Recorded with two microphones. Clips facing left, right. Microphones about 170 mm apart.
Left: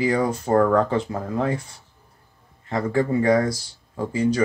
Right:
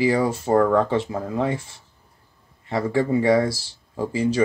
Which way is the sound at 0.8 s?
25° right (ahead or behind).